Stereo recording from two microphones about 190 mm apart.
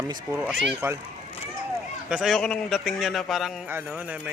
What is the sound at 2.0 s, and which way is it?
Speech, 5° right (ahead or behind).